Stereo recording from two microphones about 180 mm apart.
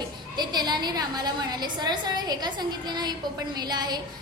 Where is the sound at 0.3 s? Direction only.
25° right (ahead or behind).